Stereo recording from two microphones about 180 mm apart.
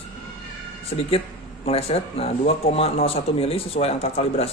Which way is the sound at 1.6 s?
35° left (ahead or behind).